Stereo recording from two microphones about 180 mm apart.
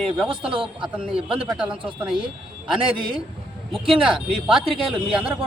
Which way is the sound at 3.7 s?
Centre (ahead or behind).